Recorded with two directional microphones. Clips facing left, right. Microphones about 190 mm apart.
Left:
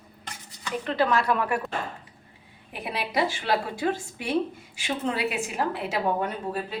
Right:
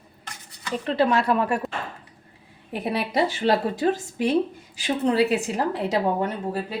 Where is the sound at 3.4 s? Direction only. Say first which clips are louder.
Right 5 dB; 35° right (ahead or behind).